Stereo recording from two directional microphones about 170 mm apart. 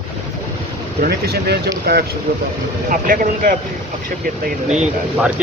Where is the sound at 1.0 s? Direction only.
65° right (ahead or behind).